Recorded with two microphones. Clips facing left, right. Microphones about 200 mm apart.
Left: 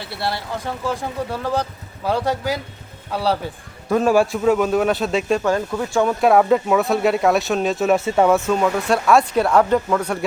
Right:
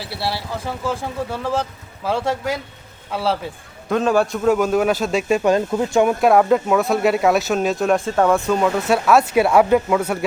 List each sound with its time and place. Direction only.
0.0 s speech: 5° right (ahead or behind)
5.4 s speech: 20° right (ahead or behind)
6.1 s speech: centre (ahead or behind)